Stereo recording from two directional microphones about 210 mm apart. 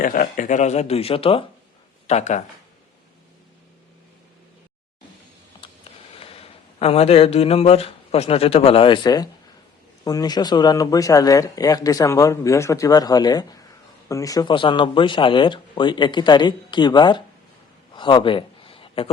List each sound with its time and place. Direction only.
0.0 s a man's voice: 40° left (ahead or behind)
6.1 s speech: 25° left (ahead or behind)
17.9 s a sound: 20° left (ahead or behind)